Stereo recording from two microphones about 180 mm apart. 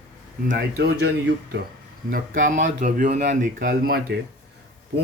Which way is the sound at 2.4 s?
45° right (ahead or behind).